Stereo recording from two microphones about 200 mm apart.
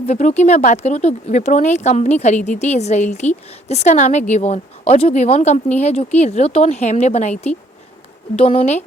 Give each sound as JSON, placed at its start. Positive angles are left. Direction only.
{"t": 0.0, "sound": "speech", "side_deg": 35}